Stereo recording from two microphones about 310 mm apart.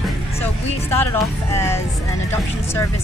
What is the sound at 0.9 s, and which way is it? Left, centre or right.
Speech, centre.